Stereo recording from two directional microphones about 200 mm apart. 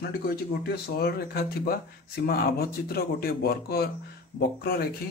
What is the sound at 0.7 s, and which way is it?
Speech, 50° left (ahead or behind).